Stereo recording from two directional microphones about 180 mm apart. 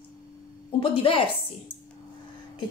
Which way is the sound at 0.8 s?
30° left (ahead or behind).